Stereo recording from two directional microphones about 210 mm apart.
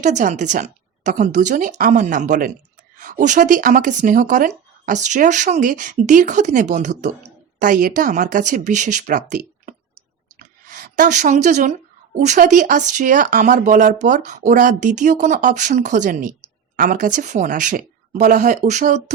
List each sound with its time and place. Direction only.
0.0 s speech: 35° right (ahead or behind)